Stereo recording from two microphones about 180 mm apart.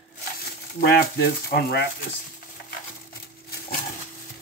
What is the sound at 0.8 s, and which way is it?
Speech, 60° left (ahead or behind).